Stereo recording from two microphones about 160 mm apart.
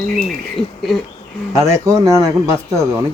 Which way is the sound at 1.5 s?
20° right (ahead or behind).